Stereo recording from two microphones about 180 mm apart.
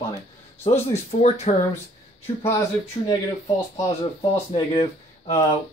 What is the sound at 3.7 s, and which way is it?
Speech, 15° left (ahead or behind).